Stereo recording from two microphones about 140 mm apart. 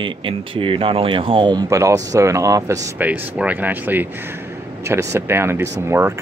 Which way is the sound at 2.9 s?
10° right (ahead or behind).